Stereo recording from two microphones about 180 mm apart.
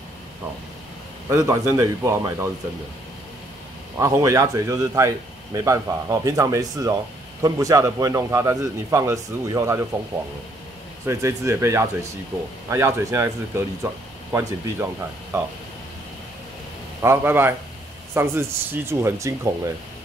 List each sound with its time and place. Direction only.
1.3 s a man's voice: 15° right (ahead or behind)
4.0 s a man's voice: 15° right (ahead or behind)
11.1 s a man's voice: 15° right (ahead or behind)
14.3 s a man's voice: 10° right (ahead or behind)
17.0 s a man's voice: 15° right (ahead or behind)